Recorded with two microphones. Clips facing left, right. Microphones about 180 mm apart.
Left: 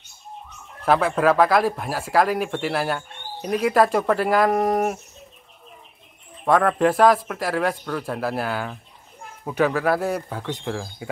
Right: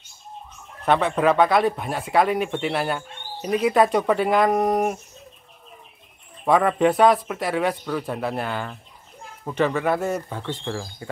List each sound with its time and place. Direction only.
0.8 s speech: 5° left (ahead or behind)
6.4 s speech: centre (ahead or behind)